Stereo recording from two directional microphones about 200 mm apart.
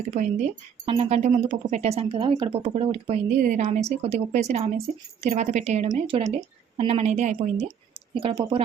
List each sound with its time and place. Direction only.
0.1 s speech: 35° right (ahead or behind)
3.2 s speech: 40° right (ahead or behind)